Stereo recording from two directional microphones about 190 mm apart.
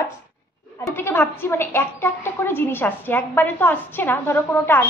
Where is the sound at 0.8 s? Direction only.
15° left (ahead or behind).